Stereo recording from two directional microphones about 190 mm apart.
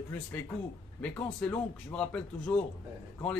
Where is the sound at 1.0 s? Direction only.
5° left (ahead or behind).